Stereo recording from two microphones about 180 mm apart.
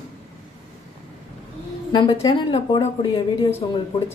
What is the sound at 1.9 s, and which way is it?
A woman's voice, 25° left (ahead or behind).